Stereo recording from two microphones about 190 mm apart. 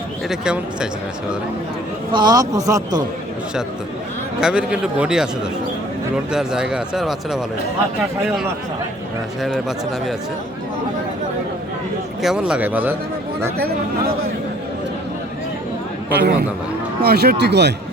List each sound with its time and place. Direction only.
0.3 s speech: 5° right (ahead or behind)
2.1 s a man's voice: 20° right (ahead or behind)
4.4 s speech: 5° right (ahead or behind)
6.3 s speech: 5° right (ahead or behind)
9.4 s speech: centre (ahead or behind)
12.2 s speech: 5° right (ahead or behind)
16.1 s speech: 55° right (ahead or behind)